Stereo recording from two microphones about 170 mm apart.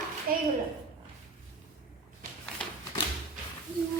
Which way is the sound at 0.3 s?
60° right (ahead or behind).